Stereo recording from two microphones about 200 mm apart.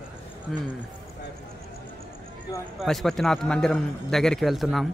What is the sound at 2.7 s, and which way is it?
A man's voice, centre (ahead or behind).